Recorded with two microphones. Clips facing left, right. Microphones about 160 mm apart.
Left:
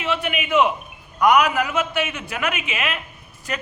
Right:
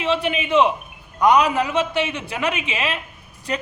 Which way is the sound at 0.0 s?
30° right (ahead or behind).